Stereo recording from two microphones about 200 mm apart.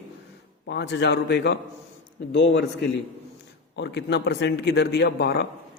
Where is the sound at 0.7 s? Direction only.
60° left (ahead or behind).